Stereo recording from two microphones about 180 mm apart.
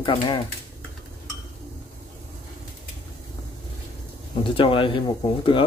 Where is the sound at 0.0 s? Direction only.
25° left (ahead or behind).